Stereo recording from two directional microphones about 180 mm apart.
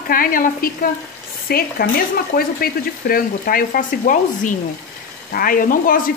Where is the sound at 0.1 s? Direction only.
50° left (ahead or behind).